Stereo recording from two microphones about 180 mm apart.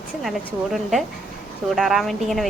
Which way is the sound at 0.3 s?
Centre (ahead or behind).